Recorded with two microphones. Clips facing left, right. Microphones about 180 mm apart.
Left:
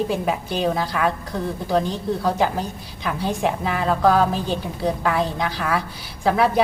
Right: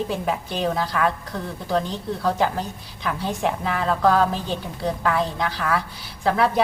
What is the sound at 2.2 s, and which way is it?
A woman's voice, 5° left (ahead or behind).